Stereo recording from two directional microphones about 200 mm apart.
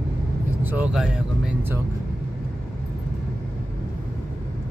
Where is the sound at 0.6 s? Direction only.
10° right (ahead or behind).